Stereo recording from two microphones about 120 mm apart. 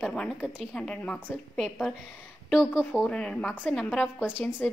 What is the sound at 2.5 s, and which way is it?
A woman's voice, 5° right (ahead or behind).